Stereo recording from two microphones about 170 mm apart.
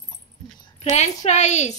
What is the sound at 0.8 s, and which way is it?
Speech, 40° left (ahead or behind).